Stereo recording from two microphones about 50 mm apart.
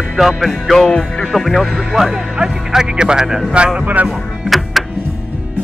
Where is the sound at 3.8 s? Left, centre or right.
Right.